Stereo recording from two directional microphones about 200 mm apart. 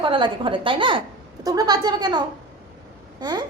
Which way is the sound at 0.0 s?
25° right (ahead or behind).